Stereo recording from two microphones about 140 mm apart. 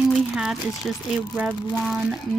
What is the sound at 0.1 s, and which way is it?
A child's voice, centre (ahead or behind).